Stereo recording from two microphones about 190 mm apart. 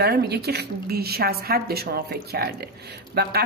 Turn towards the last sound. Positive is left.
turn(degrees=-60)  # may be behind; listen again after turning